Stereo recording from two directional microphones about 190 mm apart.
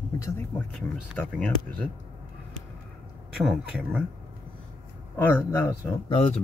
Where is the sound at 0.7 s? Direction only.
5° left (ahead or behind).